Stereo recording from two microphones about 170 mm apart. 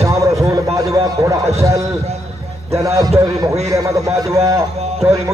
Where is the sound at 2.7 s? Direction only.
20° right (ahead or behind).